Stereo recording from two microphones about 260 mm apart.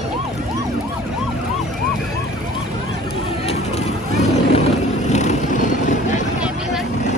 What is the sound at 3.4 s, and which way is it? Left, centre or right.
Vehicle, left.